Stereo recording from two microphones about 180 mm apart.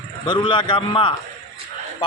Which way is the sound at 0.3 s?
30° left (ahead or behind).